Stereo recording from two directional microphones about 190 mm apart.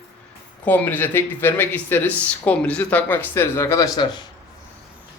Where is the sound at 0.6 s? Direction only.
10° left (ahead or behind).